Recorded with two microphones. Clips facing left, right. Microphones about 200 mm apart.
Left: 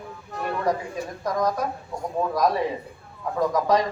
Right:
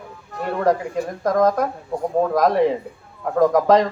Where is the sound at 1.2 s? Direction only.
55° right (ahead or behind).